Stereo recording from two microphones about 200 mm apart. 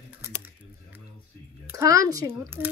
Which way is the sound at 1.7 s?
15° right (ahead or behind).